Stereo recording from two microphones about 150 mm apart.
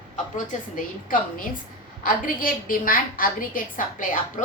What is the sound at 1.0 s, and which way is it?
A woman's voice, 65° left (ahead or behind).